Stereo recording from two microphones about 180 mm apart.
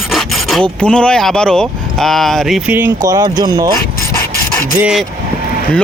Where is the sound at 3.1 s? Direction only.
20° right (ahead or behind).